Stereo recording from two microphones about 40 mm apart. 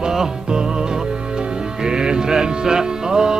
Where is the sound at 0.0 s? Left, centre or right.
Centre.